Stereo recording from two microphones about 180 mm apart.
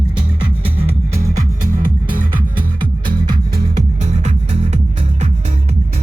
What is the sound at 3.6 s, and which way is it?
Music, 40° right (ahead or behind).